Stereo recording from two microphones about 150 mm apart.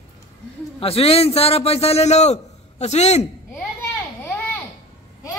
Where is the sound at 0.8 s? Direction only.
40° left (ahead or behind).